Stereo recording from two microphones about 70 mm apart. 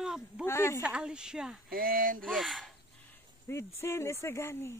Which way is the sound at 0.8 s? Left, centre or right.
Centre.